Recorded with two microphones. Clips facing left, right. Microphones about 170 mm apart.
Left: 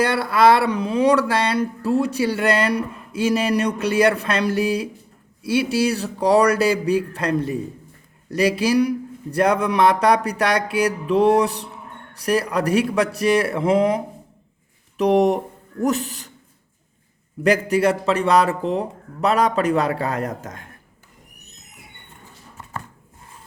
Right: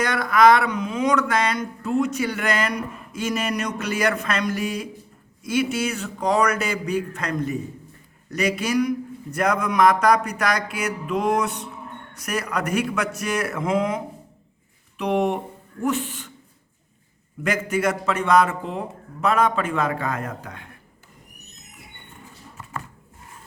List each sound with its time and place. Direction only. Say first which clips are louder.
0.0 s speech: left 1 dB; 30° left (ahead or behind)
17.4 s speech: left 5 dB; 35° left (ahead or behind)